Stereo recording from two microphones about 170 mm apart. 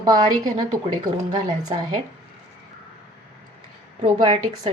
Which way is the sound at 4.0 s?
30° right (ahead or behind).